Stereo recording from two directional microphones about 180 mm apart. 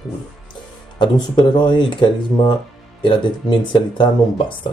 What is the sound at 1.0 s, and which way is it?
Speech, 25° left (ahead or behind).